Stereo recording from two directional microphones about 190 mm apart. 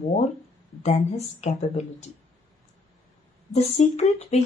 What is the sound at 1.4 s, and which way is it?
Speech, 35° left (ahead or behind).